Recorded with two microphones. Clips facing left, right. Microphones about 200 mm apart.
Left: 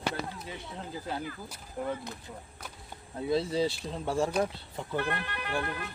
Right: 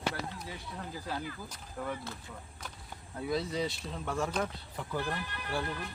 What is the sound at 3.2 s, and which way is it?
Speech, 25° left (ahead or behind).